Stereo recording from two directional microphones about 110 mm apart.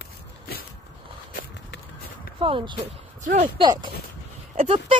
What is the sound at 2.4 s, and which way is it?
Speech, 50° right (ahead or behind).